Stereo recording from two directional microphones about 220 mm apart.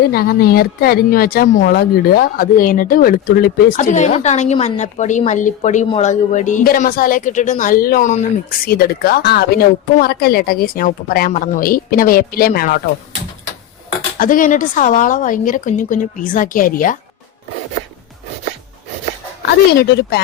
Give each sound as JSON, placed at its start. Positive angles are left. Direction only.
{"t": 0.0, "sound": "speech", "side_deg": 45}
{"t": 14.2, "sound": "speech", "side_deg": 40}
{"t": 19.8, "sound": "speech", "side_deg": 45}